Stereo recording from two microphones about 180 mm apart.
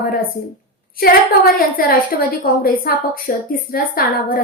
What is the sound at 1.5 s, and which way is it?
A woman's voice, 50° left (ahead or behind).